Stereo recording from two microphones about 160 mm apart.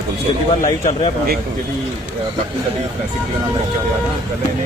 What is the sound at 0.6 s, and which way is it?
Speech, 40° left (ahead or behind).